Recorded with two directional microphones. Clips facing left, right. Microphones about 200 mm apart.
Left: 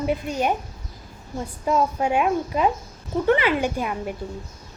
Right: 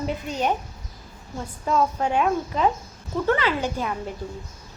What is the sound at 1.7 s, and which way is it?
A woman's voice, 10° left (ahead or behind).